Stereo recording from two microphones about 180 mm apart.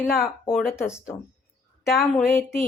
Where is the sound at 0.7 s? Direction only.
15° left (ahead or behind).